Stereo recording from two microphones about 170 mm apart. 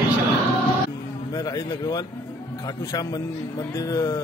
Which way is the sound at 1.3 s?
20° left (ahead or behind).